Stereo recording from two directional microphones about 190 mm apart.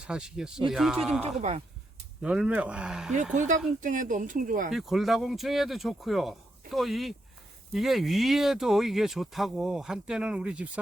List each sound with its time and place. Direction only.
0.1 s speech: 5° right (ahead or behind)
1.4 s speech: 35° right (ahead or behind)
2.2 s speech: 5° right (ahead or behind)
3.3 s speech: 40° right (ahead or behind)
4.7 s speech: centre (ahead or behind)